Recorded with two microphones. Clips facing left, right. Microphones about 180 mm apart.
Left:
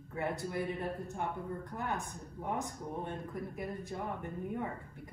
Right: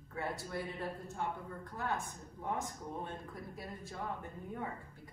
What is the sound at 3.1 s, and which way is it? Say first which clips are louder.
A woman's voice: left 5 dB; 15° left (ahead or behind).